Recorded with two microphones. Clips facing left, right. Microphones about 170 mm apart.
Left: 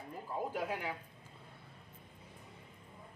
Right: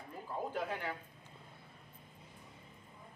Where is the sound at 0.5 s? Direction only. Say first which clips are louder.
Right 1 dB; 10° left (ahead or behind).